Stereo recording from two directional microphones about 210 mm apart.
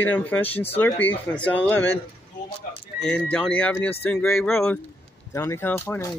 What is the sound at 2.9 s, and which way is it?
Speech, 5° left (ahead or behind).